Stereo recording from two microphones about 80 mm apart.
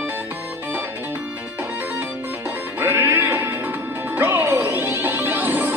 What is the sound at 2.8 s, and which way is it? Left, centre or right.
Music, right.